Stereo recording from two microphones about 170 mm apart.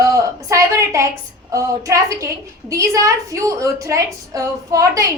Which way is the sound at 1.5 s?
20° right (ahead or behind).